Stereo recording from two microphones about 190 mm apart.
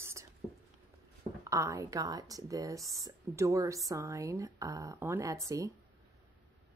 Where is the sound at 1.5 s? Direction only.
15° right (ahead or behind).